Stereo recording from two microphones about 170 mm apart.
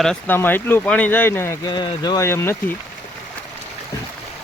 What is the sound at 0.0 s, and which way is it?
Speech, 5° left (ahead or behind).